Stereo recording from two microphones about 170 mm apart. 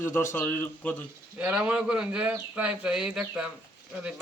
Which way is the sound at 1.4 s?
10° right (ahead or behind).